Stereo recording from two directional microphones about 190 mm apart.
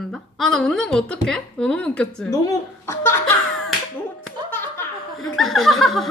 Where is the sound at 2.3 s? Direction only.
15° left (ahead or behind).